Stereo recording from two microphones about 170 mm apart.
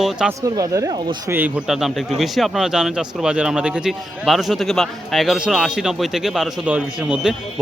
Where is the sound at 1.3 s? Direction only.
10° right (ahead or behind).